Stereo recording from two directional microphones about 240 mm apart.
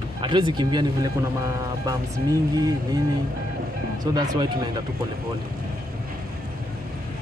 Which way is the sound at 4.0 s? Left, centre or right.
Centre.